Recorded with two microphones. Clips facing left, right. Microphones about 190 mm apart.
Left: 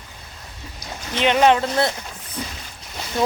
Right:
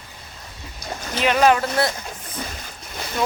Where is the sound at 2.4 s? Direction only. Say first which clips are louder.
Left 1 dB; 50° right (ahead or behind).